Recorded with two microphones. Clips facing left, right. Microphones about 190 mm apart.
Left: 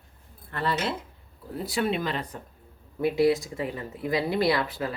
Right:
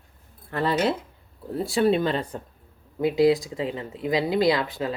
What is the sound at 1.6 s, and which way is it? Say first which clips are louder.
Speech: right 6 dB; 30° right (ahead or behind).